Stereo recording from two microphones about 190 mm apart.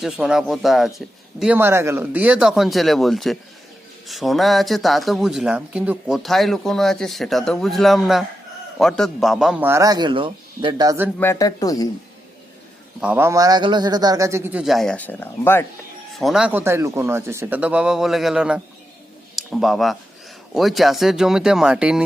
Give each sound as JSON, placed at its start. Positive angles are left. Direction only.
{"t": 0.0, "sound": "speech", "side_deg": -5}
{"t": 11.2, "sound": "speech", "side_deg": 15}
{"t": 13.0, "sound": "speech", "side_deg": -10}
{"t": 14.6, "sound": "speech", "side_deg": 0}
{"t": 16.1, "sound": "a man's voice", "side_deg": 0}